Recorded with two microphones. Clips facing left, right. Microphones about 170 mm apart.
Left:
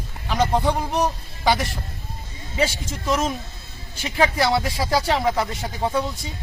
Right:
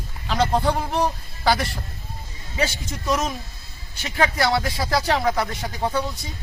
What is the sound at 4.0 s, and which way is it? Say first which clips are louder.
Speech: left 1 dB; 25° left (ahead or behind).